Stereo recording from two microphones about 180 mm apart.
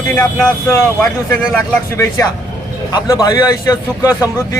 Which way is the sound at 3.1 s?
20° left (ahead or behind).